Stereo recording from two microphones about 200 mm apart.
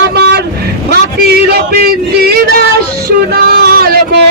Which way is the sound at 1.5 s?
50° right (ahead or behind).